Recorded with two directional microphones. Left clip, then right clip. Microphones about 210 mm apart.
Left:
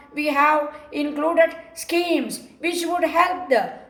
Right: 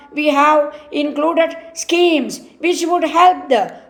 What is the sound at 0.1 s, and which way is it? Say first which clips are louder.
A woman's voice: right 6 dB; 40° right (ahead or behind).